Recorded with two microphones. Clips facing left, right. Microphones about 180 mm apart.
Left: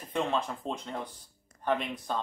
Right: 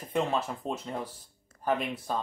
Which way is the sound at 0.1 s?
5° right (ahead or behind).